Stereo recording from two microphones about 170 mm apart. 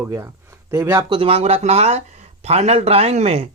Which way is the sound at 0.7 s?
15° right (ahead or behind).